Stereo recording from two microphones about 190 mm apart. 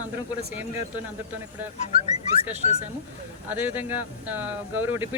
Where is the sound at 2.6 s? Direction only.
35° left (ahead or behind).